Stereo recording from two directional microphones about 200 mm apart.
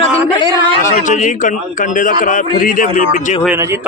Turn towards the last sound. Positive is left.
turn(degrees=45)  # may be behind; listen again after turning